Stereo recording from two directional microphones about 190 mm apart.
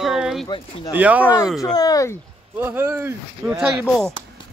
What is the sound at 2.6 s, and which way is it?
Speech, 15° right (ahead or behind).